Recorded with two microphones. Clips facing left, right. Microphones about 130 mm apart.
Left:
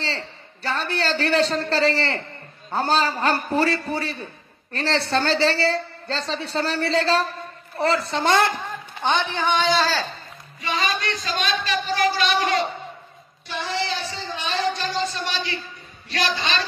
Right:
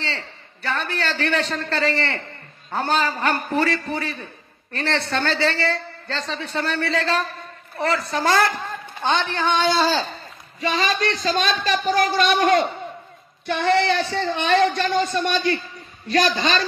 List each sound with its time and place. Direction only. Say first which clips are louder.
0.0 s a woman's voice: left 1 dB; 35° left (ahead or behind); by 9.8 s 15° left (ahead or behind)
9.8 s speech: right 2 dB; 15° right (ahead or behind)
10.8 s speech: right 3 dB; 35° right (ahead or behind)